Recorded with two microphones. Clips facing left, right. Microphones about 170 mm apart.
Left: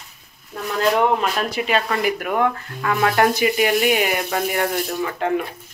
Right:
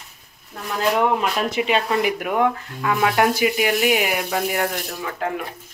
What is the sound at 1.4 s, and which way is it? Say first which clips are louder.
Speech: right 1 dB; 20° right (ahead or behind).